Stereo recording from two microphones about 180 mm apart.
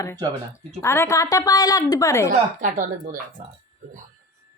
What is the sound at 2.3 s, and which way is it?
Speech, 45° right (ahead or behind).